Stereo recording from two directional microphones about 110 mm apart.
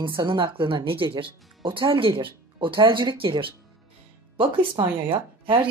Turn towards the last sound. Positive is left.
turn(degrees=-50)  # may be behind; listen again after turning